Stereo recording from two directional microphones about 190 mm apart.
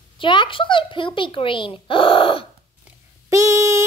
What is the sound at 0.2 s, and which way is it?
Speech, 25° left (ahead or behind).